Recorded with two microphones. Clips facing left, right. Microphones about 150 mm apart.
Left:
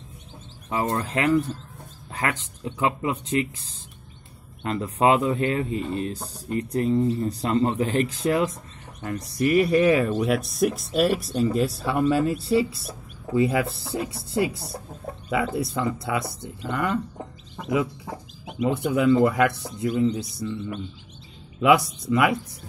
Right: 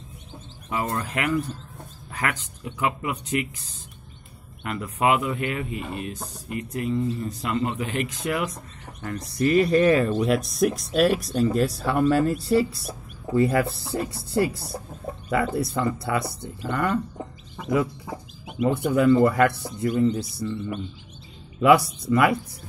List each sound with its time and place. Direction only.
0.7 s speech: 30° left (ahead or behind)
9.0 s speech: 15° left (ahead or behind)
18.6 s speech: centre (ahead or behind)
21.5 s speech: centre (ahead or behind)